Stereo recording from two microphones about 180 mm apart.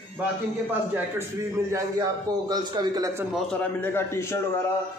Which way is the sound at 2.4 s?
25° right (ahead or behind).